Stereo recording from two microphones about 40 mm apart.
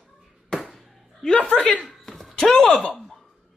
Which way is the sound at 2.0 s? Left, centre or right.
Centre.